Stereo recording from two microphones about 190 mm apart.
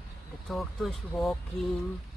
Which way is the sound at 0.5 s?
Centre (ahead or behind).